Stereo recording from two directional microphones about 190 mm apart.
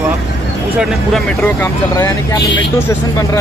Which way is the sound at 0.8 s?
Centre (ahead or behind).